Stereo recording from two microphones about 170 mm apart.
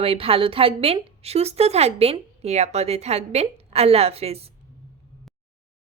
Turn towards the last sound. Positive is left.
turn(degrees=-35)  # may be behind; listen again after turning